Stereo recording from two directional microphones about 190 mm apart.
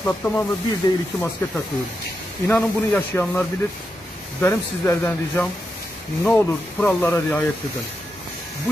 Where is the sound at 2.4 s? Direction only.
10° left (ahead or behind).